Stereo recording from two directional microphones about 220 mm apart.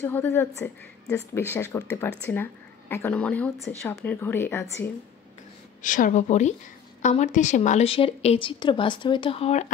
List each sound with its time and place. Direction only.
0.0 s speech: 10° left (ahead or behind)
5.8 s speech: 35° left (ahead or behind)